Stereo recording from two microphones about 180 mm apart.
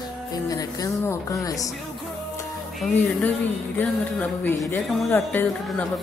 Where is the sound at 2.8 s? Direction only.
10° left (ahead or behind).